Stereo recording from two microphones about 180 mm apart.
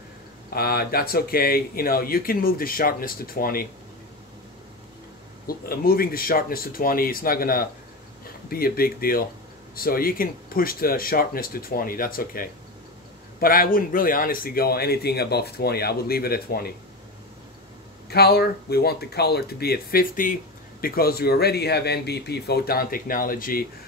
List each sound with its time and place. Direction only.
0.6 s speech: 55° left (ahead or behind)
5.5 s speech: 55° left (ahead or behind)
18.1 s speech: 60° left (ahead or behind)